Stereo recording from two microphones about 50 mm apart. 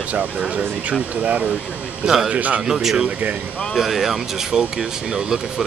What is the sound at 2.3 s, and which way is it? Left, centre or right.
Speech, right.